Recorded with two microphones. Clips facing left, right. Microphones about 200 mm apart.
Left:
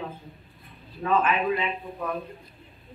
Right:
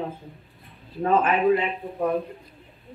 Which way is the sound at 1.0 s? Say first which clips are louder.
Right 3 dB; 40° right (ahead or behind).